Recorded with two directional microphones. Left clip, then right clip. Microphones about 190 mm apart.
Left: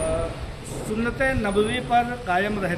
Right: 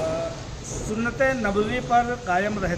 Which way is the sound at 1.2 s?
5° right (ahead or behind).